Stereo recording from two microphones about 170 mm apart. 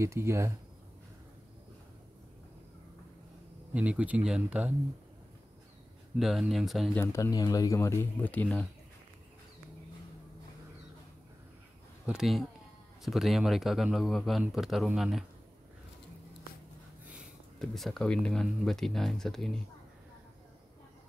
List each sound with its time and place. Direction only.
0.0 s speech: 15° right (ahead or behind)
3.7 s speech: 5° right (ahead or behind)
6.1 s speech: centre (ahead or behind)
7.0 s speech: 20° left (ahead or behind)
12.1 s speech: centre (ahead or behind)
17.0 s a sound: 10° right (ahead or behind)
17.6 s speech: centre (ahead or behind)